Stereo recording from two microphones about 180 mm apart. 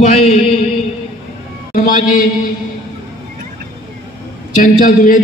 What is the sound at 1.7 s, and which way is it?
Speech, 50° left (ahead or behind).